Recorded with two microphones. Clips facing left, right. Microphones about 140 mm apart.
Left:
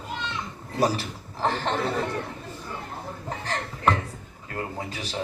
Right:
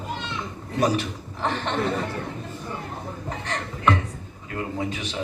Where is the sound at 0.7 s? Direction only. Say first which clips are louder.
Right 2 dB; 35° left (ahead or behind).